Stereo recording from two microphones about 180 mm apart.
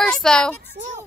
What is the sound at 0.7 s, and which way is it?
Speech, 40° right (ahead or behind).